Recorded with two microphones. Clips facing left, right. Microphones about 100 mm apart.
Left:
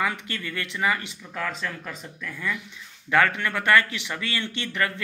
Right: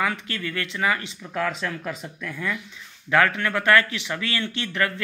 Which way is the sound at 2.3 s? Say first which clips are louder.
Even; 15° right (ahead or behind).